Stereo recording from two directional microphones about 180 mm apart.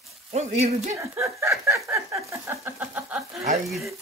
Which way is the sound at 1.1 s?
15° right (ahead or behind).